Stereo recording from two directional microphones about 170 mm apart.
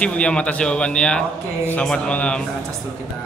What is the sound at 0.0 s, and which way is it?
A man's voice, 5° left (ahead or behind).